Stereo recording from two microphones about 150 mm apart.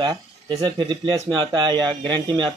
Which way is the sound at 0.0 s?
25° right (ahead or behind).